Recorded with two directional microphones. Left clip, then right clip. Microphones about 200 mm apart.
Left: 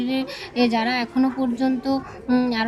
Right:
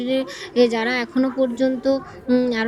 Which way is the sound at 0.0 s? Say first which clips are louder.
Right 3 dB; 15° right (ahead or behind).